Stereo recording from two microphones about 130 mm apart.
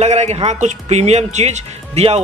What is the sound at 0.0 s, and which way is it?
Speech, 60° right (ahead or behind).